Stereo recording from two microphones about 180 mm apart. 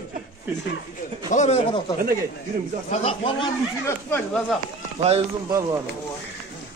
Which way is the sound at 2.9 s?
30° left (ahead or behind).